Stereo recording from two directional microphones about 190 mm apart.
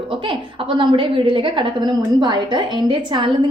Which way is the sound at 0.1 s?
25° right (ahead or behind).